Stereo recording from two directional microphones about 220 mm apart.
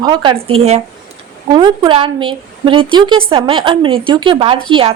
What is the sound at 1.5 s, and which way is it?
Speech, 20° right (ahead or behind).